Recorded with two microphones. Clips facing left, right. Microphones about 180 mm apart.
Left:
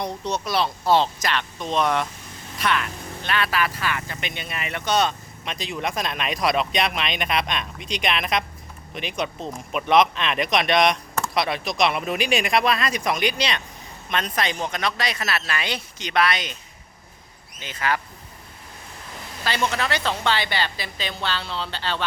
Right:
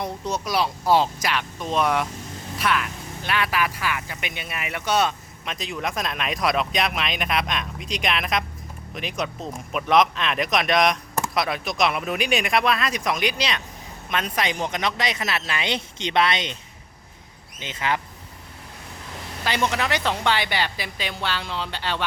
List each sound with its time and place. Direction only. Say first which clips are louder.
0.0 s a woman's voice: left 1 dB; 10° right (ahead or behind); by 16.6 s 25° right (ahead or behind)
17.6 s speech: even; 20° right (ahead or behind)
19.5 s a woman's voice: right 1 dB; 15° right (ahead or behind)